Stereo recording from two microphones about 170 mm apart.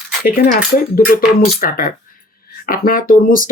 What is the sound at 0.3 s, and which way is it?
Speech, 55° left (ahead or behind).